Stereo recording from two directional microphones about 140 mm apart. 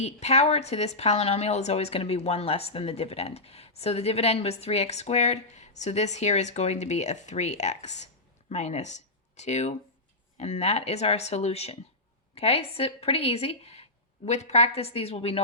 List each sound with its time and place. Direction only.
0.0 s a woman's voice: 50° left (ahead or behind)